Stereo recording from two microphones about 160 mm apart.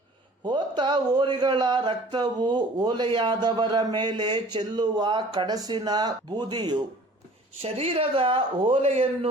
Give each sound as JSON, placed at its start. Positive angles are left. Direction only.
{"t": 0.4, "sound": "speech", "side_deg": -30}
{"t": 7.6, "sound": "speech", "side_deg": -40}